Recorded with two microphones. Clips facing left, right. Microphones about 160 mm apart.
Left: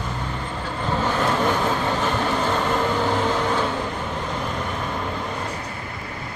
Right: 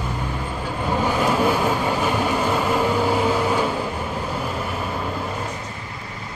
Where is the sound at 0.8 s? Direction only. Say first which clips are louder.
Right 2 dB; 10° right (ahead or behind).